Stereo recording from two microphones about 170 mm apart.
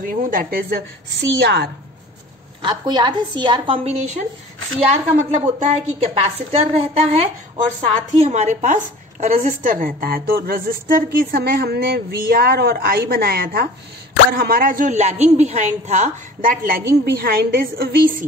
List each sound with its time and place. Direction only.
0.0 s a woman's voice: 55° right (ahead or behind); by 1.7 s 80° right
2.6 s a woman's voice: 25° right (ahead or behind); by 18.0 s 65° right (ahead or behind)